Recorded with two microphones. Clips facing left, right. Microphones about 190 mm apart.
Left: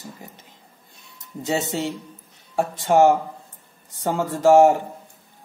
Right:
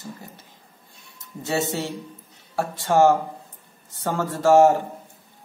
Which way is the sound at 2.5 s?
20° left (ahead or behind).